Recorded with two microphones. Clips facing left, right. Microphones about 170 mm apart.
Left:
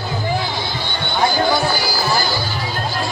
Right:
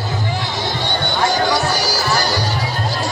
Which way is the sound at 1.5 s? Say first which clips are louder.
Even; 90° right.